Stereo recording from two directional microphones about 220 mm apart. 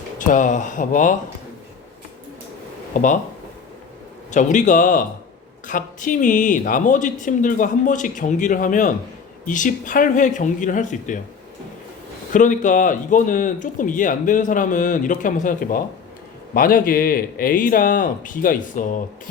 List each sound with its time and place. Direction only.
0.2 s speech: 35° left (ahead or behind)
2.9 s speech: 35° left (ahead or behind)
4.3 s speech: 35° left (ahead or behind)
12.3 s speech: 35° left (ahead or behind)